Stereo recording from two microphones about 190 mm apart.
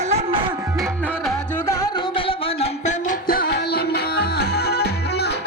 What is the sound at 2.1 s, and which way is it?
Music, 30° left (ahead or behind).